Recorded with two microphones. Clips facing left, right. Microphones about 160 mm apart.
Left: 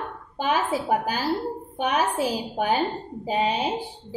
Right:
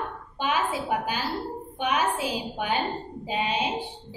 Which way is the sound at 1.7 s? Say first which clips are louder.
Left 2 dB; 40° left (ahead or behind).